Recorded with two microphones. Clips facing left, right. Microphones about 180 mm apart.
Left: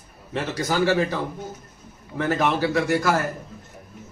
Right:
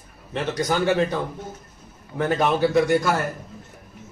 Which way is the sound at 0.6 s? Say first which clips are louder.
Even; 5° left (ahead or behind).